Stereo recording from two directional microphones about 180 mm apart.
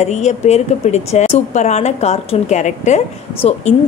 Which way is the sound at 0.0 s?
40° left (ahead or behind).